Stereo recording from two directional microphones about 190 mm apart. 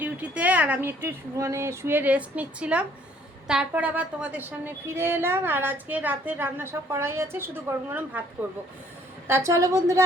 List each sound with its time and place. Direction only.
0.0 s a woman's voice: 10° right (ahead or behind)
9.2 s a woman's voice: 15° right (ahead or behind)